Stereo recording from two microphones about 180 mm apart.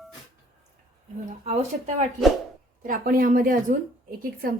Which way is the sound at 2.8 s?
50° right (ahead or behind).